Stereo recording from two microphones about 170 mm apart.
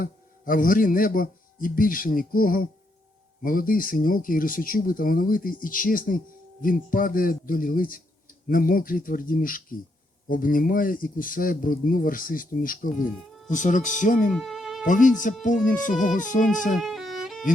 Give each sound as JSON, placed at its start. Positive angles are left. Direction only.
{"t": 0.0, "sound": "speech", "side_deg": 55}
{"t": 14.3, "sound": "music", "side_deg": 0}
{"t": 14.8, "sound": "speech", "side_deg": 50}
{"t": 16.8, "sound": "violin", "side_deg": 0}